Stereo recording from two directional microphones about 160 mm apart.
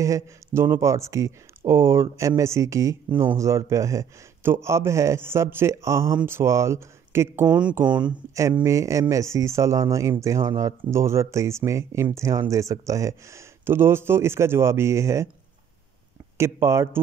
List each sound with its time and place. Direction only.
0.0 s speech: 20° right (ahead or behind)
8.4 s speech: 20° right (ahead or behind)
16.3 s speech: 15° right (ahead or behind)